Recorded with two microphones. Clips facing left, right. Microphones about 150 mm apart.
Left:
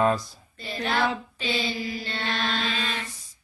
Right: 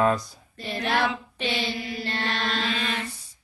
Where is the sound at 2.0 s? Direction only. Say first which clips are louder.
Right 4 dB; 65° right (ahead or behind).